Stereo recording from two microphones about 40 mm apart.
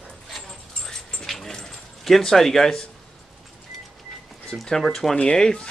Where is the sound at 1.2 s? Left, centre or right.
Centre.